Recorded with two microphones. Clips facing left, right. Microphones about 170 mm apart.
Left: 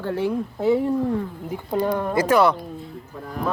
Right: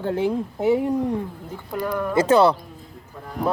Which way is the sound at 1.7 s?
30° left (ahead or behind).